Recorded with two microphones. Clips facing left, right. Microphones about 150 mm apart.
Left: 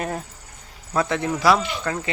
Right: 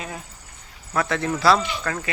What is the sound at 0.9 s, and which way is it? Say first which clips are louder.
A man's voice: left 1 dB; 20° left (ahead or behind).